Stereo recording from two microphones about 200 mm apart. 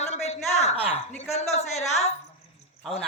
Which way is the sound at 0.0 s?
35° left (ahead or behind).